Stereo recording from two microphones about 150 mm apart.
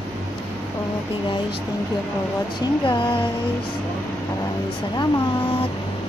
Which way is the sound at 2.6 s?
35° left (ahead or behind).